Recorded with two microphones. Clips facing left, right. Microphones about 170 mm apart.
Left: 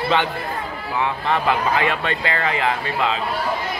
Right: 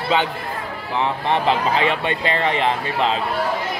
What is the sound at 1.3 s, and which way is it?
Speech, 25° right (ahead or behind).